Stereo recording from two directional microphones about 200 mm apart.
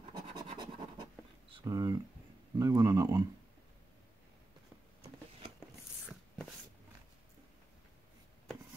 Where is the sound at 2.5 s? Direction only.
20° right (ahead or behind).